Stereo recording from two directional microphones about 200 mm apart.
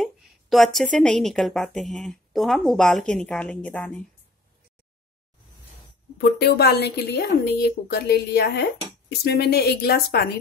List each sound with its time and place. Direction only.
0.0 s a woman's voice: centre (ahead or behind)
6.1 s speech: 55° left (ahead or behind)